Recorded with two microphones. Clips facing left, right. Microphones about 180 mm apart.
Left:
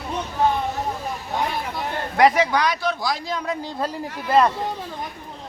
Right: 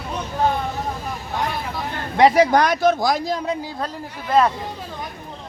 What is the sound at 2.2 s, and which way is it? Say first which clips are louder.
Speech: right 3 dB; 30° right (ahead or behind).